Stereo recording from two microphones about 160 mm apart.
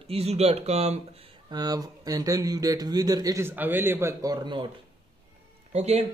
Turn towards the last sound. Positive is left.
turn(degrees=-40)  # may be behind; listen again after turning